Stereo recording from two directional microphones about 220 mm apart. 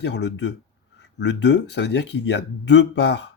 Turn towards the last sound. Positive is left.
turn(degrees=50)  # may be behind; listen again after turning